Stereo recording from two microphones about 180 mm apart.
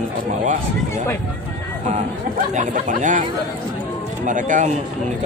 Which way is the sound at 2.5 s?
45° right (ahead or behind).